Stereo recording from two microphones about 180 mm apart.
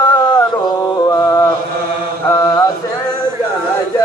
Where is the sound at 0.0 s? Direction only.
20° left (ahead or behind).